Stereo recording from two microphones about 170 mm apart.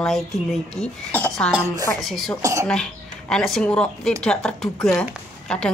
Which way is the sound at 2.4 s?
20° right (ahead or behind).